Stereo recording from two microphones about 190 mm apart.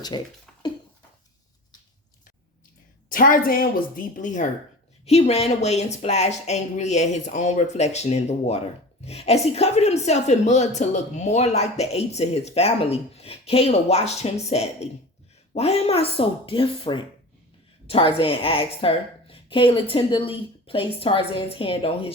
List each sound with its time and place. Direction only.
3.1 s a woman's voice: 45° left (ahead or behind); by 22.1 s 30° left (ahead or behind)